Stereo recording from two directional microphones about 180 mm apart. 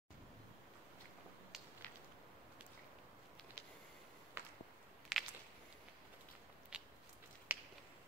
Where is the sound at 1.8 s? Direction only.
5° left (ahead or behind).